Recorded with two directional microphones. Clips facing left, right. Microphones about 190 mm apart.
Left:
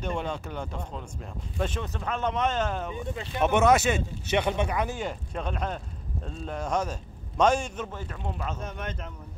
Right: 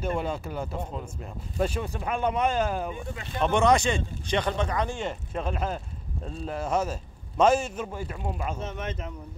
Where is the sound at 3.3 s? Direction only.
10° left (ahead or behind).